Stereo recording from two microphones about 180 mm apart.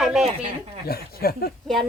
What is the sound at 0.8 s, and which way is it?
Speech, 60° left (ahead or behind).